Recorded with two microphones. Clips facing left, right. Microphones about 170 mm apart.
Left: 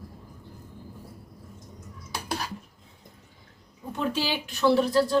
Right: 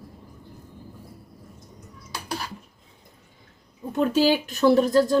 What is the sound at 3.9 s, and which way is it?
Speech, 45° right (ahead or behind).